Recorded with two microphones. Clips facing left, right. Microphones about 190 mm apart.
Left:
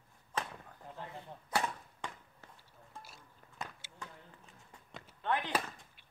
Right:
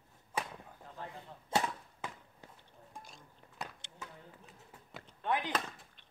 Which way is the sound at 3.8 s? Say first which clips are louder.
Right 1 dB; 5° left (ahead or behind).